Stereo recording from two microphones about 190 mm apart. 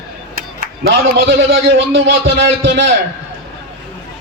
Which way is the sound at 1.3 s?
75° right (ahead or behind).